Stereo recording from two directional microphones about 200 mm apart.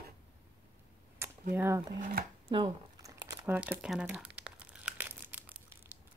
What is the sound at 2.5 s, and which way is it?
Speech, 20° right (ahead or behind).